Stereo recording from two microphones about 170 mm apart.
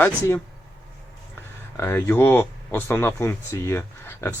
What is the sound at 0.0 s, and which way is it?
Speech, 10° left (ahead or behind).